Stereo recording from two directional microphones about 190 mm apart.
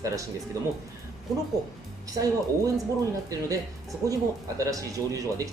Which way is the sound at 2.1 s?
20° right (ahead or behind).